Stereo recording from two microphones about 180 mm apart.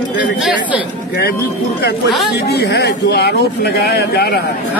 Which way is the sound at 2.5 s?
70° left (ahead or behind).